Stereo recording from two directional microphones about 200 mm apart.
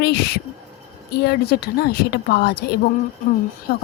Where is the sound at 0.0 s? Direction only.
55° left (ahead or behind).